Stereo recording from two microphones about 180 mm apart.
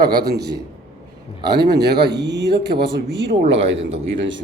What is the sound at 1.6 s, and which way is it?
Speech, 65° right (ahead or behind).